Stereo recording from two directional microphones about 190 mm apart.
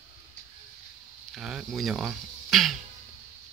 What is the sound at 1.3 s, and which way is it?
A man's voice, centre (ahead or behind).